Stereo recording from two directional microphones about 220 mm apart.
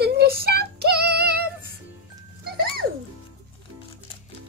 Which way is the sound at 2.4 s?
45° right (ahead or behind).